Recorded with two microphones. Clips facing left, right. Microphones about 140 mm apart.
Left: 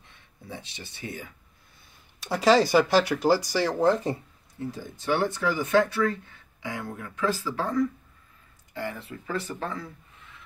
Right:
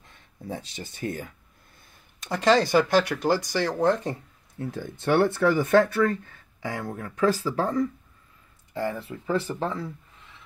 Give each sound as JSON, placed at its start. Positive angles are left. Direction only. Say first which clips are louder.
{"t": 0.0, "sound": "speech", "louder": "right 8 dB", "side_deg": -45}
{"t": 2.1, "sound": "speech", "louder": "left 1 dB", "side_deg": 5}
{"t": 4.6, "sound": "speech", "louder": "right 3 dB", "side_deg": -60}
{"t": 6.6, "sound": "speech", "louder": "right 3 dB", "side_deg": -40}
{"t": 8.7, "sound": "speech", "louder": "right 5 dB", "side_deg": -30}